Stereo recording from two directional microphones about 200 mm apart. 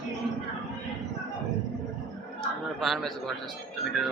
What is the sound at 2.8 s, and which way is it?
Speech, centre (ahead or behind).